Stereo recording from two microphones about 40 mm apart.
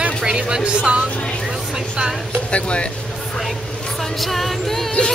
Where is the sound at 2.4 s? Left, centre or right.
Left.